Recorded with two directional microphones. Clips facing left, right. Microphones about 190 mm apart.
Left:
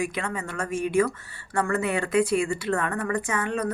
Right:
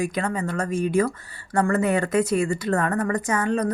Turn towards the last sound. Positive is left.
turn(degrees=-40)  # may be behind; listen again after turning